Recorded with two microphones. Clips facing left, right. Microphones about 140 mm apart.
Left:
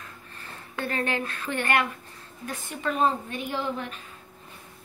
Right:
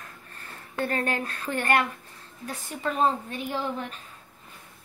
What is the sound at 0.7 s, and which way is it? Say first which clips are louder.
Speech: right 1 dB; 45° right (ahead or behind).